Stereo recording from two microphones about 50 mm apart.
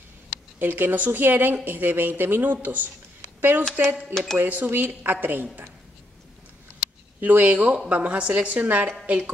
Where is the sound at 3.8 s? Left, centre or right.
Right.